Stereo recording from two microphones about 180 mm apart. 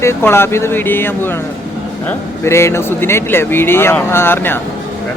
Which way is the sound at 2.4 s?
15° left (ahead or behind).